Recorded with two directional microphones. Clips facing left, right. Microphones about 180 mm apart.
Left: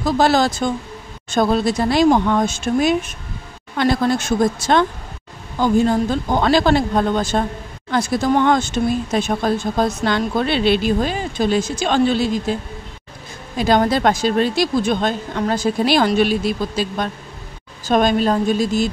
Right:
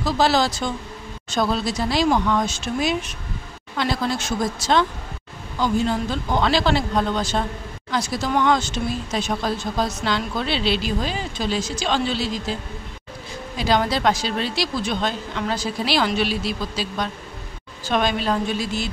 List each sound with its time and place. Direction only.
0.0 s speech: 50° left (ahead or behind)
13.6 s speech: 50° left (ahead or behind)